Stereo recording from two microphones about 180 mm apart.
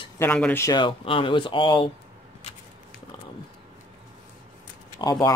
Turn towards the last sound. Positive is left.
turn(degrees=25)  # may be behind; listen again after turning